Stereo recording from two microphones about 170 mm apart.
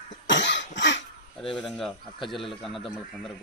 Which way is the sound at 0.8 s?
90° left.